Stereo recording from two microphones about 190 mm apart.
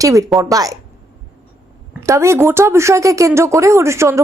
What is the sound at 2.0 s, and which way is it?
Speech, 15° right (ahead or behind).